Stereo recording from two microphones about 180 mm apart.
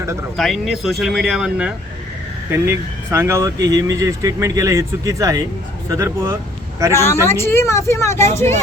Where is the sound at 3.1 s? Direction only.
15° right (ahead or behind).